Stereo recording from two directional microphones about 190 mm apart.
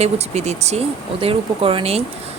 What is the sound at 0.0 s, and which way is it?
Speech, 35° right (ahead or behind).